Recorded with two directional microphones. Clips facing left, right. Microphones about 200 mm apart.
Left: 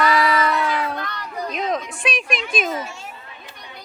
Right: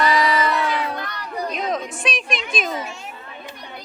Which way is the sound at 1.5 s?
Centre (ahead or behind).